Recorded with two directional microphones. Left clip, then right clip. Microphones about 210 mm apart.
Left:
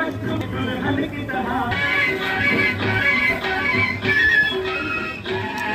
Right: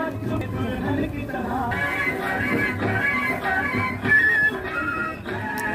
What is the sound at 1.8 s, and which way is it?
Music, 30° right (ahead or behind).